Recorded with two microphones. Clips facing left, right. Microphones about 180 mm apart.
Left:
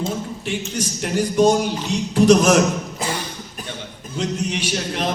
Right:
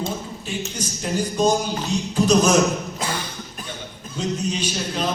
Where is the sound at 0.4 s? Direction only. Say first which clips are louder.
Left 3 dB; 75° left (ahead or behind).